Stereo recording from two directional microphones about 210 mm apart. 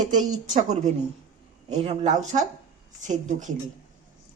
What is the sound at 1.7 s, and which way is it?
A man's voice, 30° right (ahead or behind).